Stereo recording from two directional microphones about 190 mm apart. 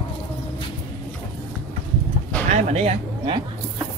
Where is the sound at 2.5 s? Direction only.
35° right (ahead or behind).